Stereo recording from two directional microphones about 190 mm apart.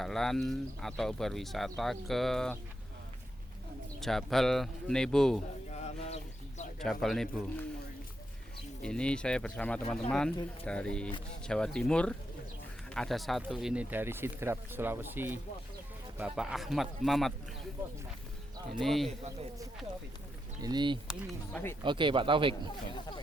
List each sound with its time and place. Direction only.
0.0 s speech: centre (ahead or behind)
4.0 s speech: centre (ahead or behind)
5.7 s a sound: 35° left (ahead or behind)
6.7 s speech: centre (ahead or behind)
8.8 s speech: 5° left (ahead or behind)
18.8 s speech: centre (ahead or behind)
20.6 s speech: 20° right (ahead or behind)
23.0 s speech: 25° left (ahead or behind)